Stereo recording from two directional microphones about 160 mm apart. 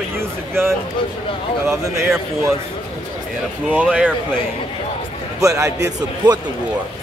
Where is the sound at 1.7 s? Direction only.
15° right (ahead or behind).